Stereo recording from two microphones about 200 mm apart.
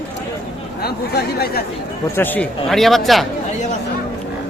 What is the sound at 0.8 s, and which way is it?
Speech, 50° left (ahead or behind).